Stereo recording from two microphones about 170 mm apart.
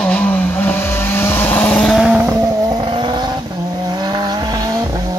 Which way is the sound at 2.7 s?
30° right (ahead or behind).